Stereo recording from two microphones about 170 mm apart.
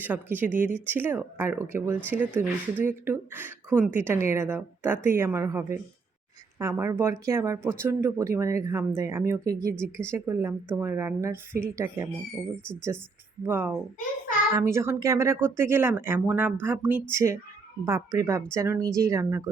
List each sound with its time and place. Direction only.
0.0 s speech: 10° right (ahead or behind)